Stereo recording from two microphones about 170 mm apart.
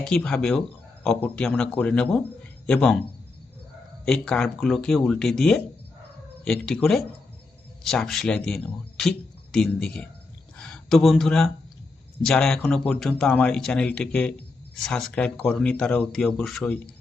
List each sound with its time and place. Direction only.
0.0 s speech: 5° left (ahead or behind)
4.0 s speech: 5° left (ahead or behind)